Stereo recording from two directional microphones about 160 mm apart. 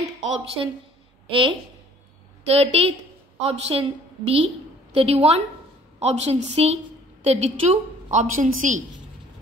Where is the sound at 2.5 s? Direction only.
40° right (ahead or behind).